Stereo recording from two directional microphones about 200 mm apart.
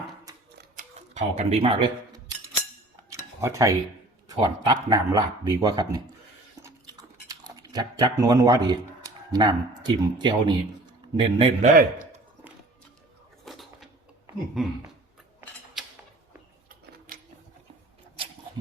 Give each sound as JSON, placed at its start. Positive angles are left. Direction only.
{"t": 0.8, "sound": "speech", "side_deg": -35}
{"t": 3.1, "sound": "cutlery", "side_deg": -15}
{"t": 4.3, "sound": "speech", "side_deg": -25}
{"t": 6.6, "sound": "chewing", "side_deg": -15}
{"t": 11.1, "sound": "speech", "side_deg": -25}
{"t": 11.6, "sound": "a man's voice", "side_deg": -40}
{"t": 13.4, "sound": "a sound", "side_deg": 0}
{"t": 14.6, "sound": "speech", "side_deg": 0}
{"t": 15.8, "sound": "mechanisms", "side_deg": 0}
{"t": 16.6, "sound": "a sound", "side_deg": -45}